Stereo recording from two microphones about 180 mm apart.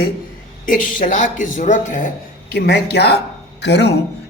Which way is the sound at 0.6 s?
50° left (ahead or behind).